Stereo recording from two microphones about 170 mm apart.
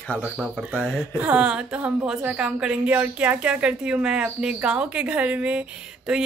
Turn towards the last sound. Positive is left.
turn(degrees=-5)  # may be behind; listen again after turning